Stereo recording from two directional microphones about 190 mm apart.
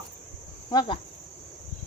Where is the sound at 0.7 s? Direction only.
20° left (ahead or behind).